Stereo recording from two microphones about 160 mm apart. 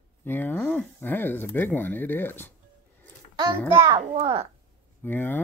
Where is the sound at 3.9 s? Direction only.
30° right (ahead or behind).